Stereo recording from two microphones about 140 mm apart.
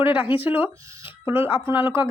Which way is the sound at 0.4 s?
15° right (ahead or behind).